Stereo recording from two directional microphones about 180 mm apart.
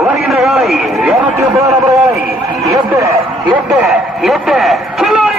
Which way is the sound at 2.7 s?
15° right (ahead or behind).